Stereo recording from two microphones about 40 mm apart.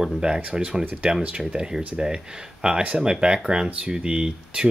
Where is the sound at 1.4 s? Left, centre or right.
Centre.